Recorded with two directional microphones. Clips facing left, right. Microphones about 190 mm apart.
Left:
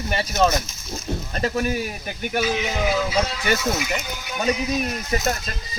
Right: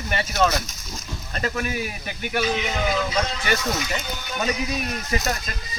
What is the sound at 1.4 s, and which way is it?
Speech, 35° left (ahead or behind).